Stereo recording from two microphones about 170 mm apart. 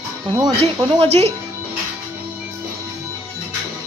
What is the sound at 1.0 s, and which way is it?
Speech, 40° right (ahead or behind).